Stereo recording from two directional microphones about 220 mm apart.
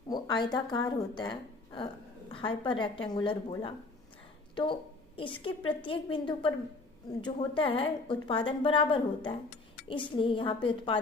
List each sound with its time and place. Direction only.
0.1 s a woman's voice: 20° left (ahead or behind)